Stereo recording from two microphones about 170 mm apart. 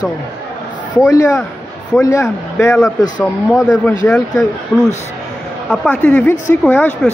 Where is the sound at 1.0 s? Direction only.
20° left (ahead or behind).